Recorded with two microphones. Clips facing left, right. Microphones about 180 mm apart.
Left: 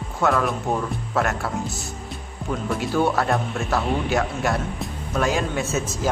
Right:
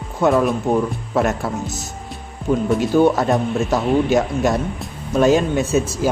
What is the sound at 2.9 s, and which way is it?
A man's voice, 20° right (ahead or behind).